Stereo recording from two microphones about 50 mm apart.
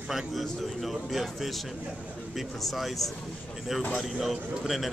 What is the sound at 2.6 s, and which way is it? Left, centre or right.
Speech, centre.